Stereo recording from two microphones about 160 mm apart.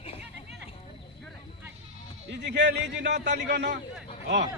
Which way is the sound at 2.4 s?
90° right.